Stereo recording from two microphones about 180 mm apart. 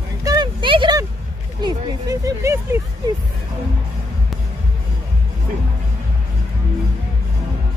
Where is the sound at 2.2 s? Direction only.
15° right (ahead or behind).